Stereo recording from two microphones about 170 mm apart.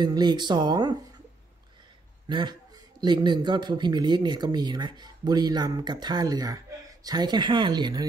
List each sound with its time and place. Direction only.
0.0 s speech: 25° right (ahead or behind)
2.2 s a man's voice: 25° right (ahead or behind)